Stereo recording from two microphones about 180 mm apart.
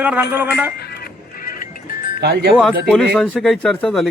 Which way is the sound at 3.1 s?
Centre (ahead or behind).